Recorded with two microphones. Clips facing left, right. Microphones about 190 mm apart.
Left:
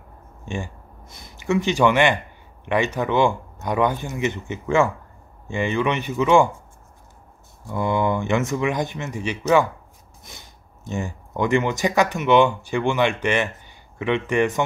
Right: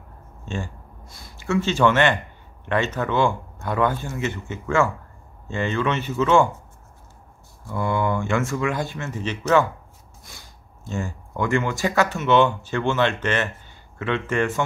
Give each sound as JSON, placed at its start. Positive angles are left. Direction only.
{"t": 0.5, "sound": "speech", "side_deg": 15}
{"t": 7.6, "sound": "speech", "side_deg": 20}